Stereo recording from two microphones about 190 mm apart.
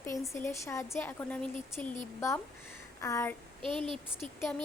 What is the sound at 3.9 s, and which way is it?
Speech, centre (ahead or behind).